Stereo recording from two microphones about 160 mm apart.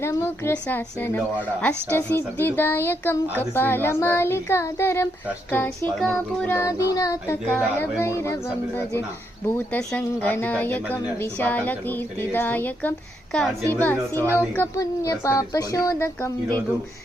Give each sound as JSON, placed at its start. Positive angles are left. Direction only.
{"t": 0.0, "sound": "speech", "side_deg": 15}
{"t": 9.6, "sound": "speech", "side_deg": 10}